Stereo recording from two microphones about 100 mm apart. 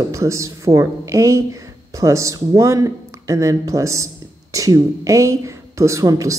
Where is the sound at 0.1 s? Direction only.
30° right (ahead or behind).